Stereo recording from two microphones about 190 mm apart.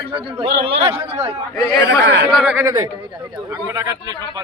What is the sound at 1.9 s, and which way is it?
Speech, 70° right (ahead or behind).